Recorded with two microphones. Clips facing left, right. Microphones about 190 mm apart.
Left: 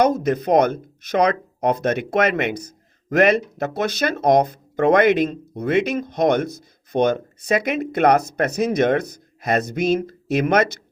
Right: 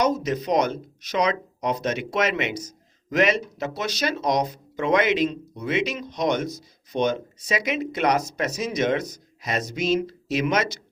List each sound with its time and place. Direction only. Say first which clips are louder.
0.0 s speech: left 5 dB; 55° left (ahead or behind)